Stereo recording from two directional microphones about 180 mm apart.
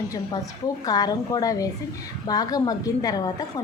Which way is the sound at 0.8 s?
20° left (ahead or behind).